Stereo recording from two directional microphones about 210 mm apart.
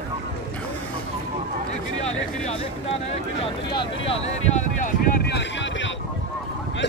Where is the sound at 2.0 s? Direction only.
30° left (ahead or behind).